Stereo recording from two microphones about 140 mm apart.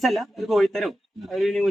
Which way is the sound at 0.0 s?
Centre (ahead or behind).